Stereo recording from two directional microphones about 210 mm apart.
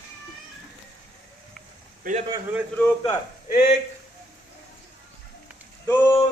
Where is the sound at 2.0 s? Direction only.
40° right (ahead or behind).